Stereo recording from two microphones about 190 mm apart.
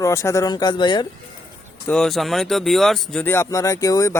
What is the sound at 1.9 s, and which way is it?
Speech, centre (ahead or behind).